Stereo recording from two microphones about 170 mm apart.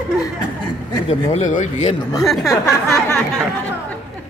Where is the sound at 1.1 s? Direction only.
40° left (ahead or behind).